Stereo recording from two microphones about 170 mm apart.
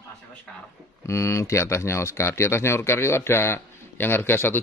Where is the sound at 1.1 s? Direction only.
15° left (ahead or behind).